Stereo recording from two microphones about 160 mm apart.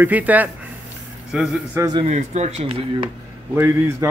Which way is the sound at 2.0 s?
45° right (ahead or behind).